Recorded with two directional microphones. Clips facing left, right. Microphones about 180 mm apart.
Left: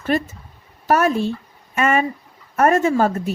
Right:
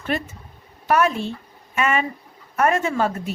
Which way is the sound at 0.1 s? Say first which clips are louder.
Left 5 dB; 40° left (ahead or behind).